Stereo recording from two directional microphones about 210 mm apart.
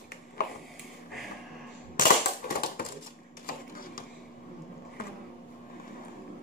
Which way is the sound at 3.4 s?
40° left (ahead or behind).